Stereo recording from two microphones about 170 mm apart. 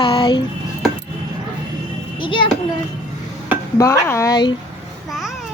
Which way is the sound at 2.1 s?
30° left (ahead or behind).